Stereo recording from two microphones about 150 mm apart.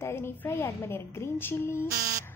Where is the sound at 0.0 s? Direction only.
15° left (ahead or behind).